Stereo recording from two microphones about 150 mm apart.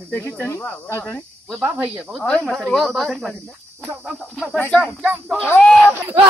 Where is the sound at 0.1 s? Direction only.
15° left (ahead or behind).